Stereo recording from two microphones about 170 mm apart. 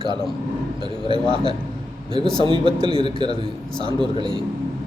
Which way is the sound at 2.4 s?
30° right (ahead or behind).